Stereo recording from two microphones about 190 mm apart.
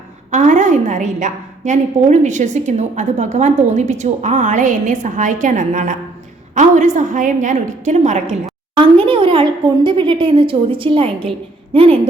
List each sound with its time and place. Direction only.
0.3 s a woman's voice: 40° right (ahead or behind)
8.7 s a woman's voice: 25° right (ahead or behind)